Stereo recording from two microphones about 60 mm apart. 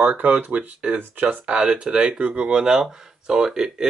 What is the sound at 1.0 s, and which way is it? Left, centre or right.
Speech, right.